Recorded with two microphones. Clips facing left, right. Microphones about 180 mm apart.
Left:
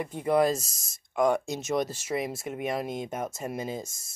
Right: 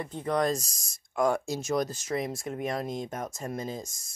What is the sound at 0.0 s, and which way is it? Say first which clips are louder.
Speech: left 4 dB; 10° left (ahead or behind).